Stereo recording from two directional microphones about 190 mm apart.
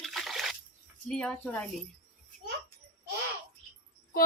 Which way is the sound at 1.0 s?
5° left (ahead or behind).